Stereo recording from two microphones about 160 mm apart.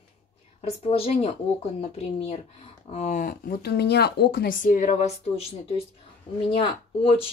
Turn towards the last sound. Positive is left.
turn(degrees=35)  # may be behind; listen again after turning